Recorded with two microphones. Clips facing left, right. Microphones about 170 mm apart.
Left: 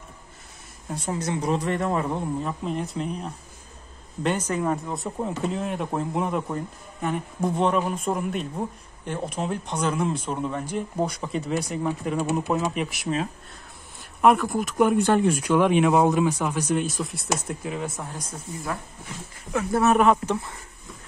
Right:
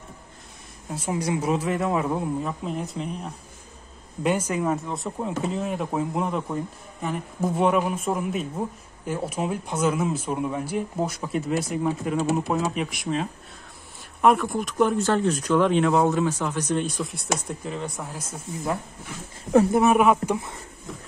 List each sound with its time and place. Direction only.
0.8 s speech: 5° right (ahead or behind)
14.8 s speech: 15° left (ahead or behind)
19.7 s speech: 10° right (ahead or behind)